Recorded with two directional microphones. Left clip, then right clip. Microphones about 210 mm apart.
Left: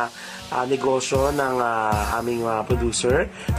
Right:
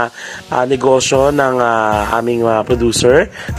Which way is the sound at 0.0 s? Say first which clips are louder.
Right 8 dB; 40° right (ahead or behind).